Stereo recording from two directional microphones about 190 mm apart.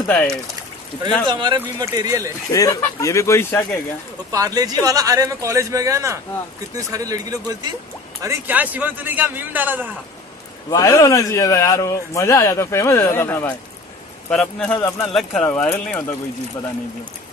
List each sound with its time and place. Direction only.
0.0 s speech: 10° left (ahead or behind)
1.3 s speech: 25° right (ahead or behind)
2.5 s speech: 20° left (ahead or behind)
4.3 s speech: 20° right (ahead or behind)
10.7 s a man's voice: 20° left (ahead or behind)
14.8 s speech: 15° left (ahead or behind)
15.1 s speech: 5° left (ahead or behind)